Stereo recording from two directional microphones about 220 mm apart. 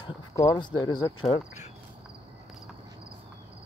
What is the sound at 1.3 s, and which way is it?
Speech, 30° left (ahead or behind).